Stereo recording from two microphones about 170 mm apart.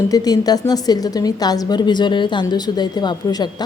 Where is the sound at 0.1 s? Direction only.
20° left (ahead or behind).